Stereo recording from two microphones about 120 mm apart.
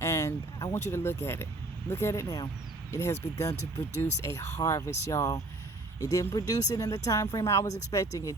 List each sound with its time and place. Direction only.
0.0 s vehicle: 25° left (ahead or behind)
1.9 s speech: 25° left (ahead or behind)